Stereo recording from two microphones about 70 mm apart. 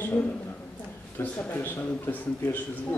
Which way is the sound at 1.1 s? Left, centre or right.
Left.